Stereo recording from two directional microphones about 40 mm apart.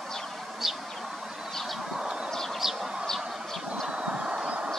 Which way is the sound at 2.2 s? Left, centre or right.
Centre.